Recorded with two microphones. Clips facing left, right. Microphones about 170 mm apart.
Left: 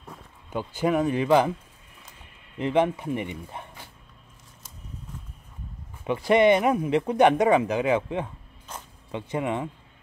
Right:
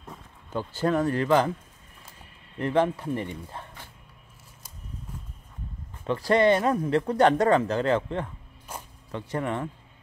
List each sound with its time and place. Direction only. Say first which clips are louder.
0.0 s speech: even; 15° left (ahead or behind)
2.5 s speech: left 1 dB; 15° left (ahead or behind)
6.0 s speech: left 2 dB; 15° left (ahead or behind)
8.7 s zipper: right 1 dB; 10° right (ahead or behind)
9.1 s speech: left 2 dB; 15° left (ahead or behind)